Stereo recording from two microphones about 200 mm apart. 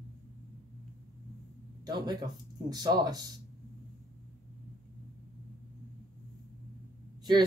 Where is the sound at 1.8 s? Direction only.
20° right (ahead or behind).